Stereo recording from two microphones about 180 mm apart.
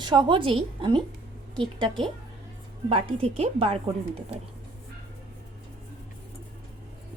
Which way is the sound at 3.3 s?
35° right (ahead or behind).